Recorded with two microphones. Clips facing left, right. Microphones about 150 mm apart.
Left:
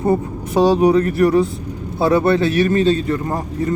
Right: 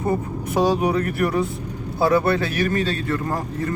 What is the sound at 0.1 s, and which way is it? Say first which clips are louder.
A man's voice: left 4 dB; 25° left (ahead or behind).